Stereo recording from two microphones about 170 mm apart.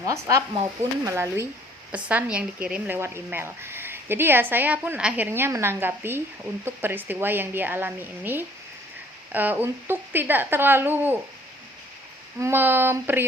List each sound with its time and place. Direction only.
0.0 s speech: 20° right (ahead or behind)
12.4 s speech: 15° right (ahead or behind)